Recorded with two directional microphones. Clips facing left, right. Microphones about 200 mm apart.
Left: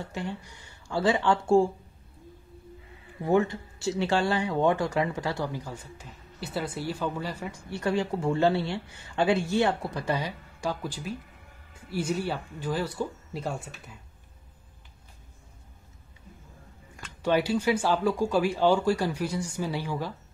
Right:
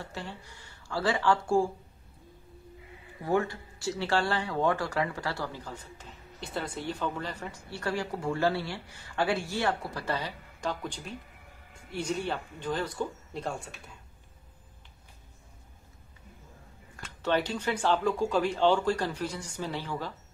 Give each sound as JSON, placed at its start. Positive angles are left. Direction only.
{"t": 0.0, "sound": "speech", "side_deg": 20}
{"t": 3.3, "sound": "speech", "side_deg": 20}
{"t": 16.9, "sound": "speech", "side_deg": 10}